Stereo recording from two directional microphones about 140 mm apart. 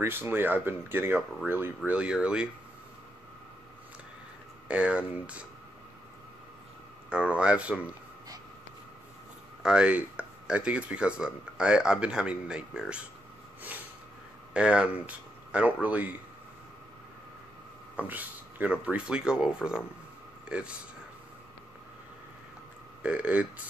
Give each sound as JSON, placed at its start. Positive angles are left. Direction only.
{"t": 0.0, "sound": "speech", "side_deg": -15}
{"t": 4.6, "sound": "speech", "side_deg": -10}
{"t": 7.1, "sound": "speech", "side_deg": -10}
{"t": 9.6, "sound": "speech", "side_deg": -5}
{"t": 14.5, "sound": "speech", "side_deg": -5}
{"t": 17.9, "sound": "speech", "side_deg": -10}
{"t": 23.0, "sound": "speech", "side_deg": -10}